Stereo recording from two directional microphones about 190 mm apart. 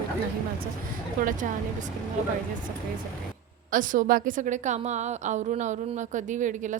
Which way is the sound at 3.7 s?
45° right (ahead or behind).